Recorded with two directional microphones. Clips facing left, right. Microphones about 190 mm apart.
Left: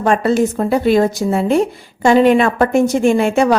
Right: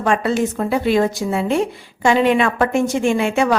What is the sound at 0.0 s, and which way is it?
A woman's voice, 40° left (ahead or behind).